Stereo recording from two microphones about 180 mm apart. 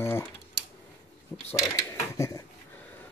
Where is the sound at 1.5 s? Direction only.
15° left (ahead or behind).